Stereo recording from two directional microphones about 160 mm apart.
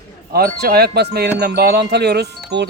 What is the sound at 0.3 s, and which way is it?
Music, 70° right (ahead or behind).